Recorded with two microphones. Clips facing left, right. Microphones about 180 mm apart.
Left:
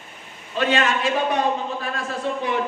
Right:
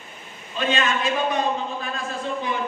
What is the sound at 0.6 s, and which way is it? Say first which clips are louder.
A man's voice: left 3 dB; 65° left (ahead or behind).